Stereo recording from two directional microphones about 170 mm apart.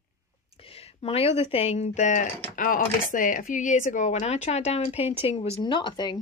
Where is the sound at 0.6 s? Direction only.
35° left (ahead or behind).